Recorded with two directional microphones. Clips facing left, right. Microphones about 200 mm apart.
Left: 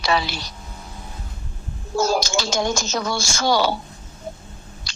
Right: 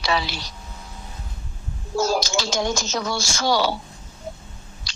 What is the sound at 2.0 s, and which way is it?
A woman's voice, 50° left (ahead or behind).